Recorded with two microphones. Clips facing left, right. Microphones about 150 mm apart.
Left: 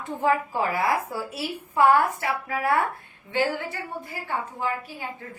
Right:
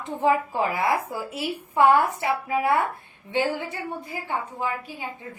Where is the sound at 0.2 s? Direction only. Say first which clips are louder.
Right 2 dB; 20° right (ahead or behind).